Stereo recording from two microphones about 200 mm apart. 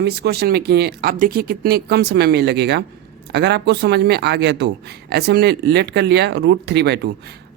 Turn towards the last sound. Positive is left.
turn(degrees=-55)  # may be behind; listen again after turning